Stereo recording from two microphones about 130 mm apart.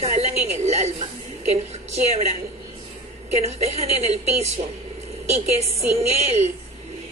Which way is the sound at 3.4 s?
55° right (ahead or behind).